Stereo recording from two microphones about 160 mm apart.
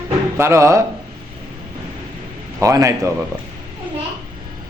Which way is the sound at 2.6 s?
20° right (ahead or behind).